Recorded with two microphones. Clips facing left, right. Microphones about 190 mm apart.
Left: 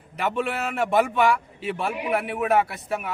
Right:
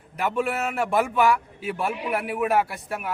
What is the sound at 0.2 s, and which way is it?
A man's voice, 5° right (ahead or behind).